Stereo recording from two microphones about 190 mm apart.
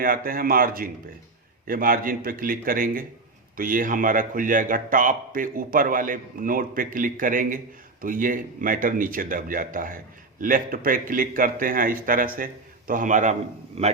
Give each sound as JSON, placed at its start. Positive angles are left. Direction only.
{"t": 0.0, "sound": "a man's voice", "side_deg": -50}